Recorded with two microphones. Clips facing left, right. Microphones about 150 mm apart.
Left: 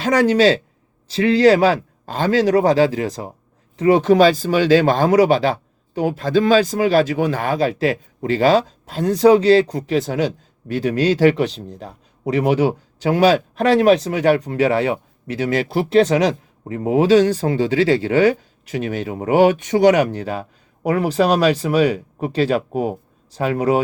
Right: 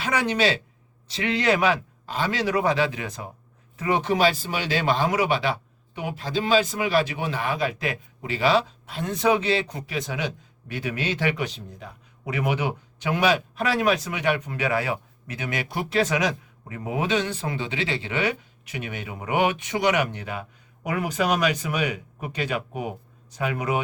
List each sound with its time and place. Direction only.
0.0 s speech: 40° left (ahead or behind)
4.1 s speech: 45° left (ahead or behind)